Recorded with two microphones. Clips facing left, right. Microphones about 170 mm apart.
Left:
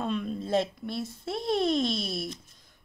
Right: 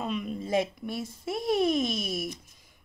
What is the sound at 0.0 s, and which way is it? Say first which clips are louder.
Speech: left 1 dB; 10° right (ahead or behind).